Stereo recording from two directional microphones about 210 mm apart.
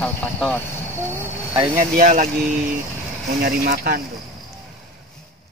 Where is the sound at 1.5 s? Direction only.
35° right (ahead or behind).